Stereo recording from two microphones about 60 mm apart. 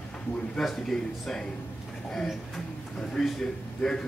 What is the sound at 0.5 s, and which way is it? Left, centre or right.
Speech, centre.